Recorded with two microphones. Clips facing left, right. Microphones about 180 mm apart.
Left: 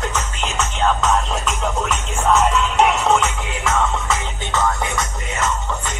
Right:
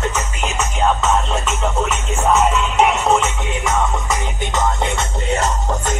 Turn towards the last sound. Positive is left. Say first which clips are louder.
# right 3 dB
turn(degrees=-35)  # may be behind; listen again after turning